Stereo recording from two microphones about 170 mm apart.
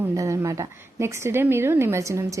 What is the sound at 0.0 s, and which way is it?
A woman's voice, 20° right (ahead or behind).